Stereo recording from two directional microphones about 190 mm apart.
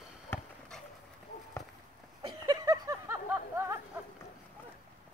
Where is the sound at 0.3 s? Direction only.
10° left (ahead or behind).